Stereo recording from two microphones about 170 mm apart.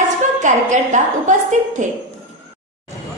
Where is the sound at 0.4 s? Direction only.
45° right (ahead or behind).